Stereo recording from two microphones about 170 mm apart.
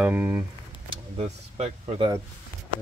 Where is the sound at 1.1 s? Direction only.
40° right (ahead or behind).